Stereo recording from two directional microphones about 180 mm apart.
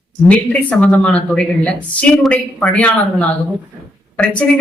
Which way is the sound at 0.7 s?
5° left (ahead or behind).